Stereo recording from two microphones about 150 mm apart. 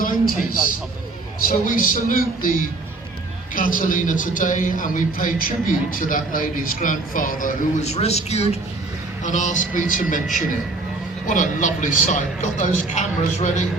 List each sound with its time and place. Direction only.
1.4 s a man's voice: 65° left (ahead or behind); by 8.5 s 45° left (ahead or behind)
9.2 s a man's voice: 55° left (ahead or behind)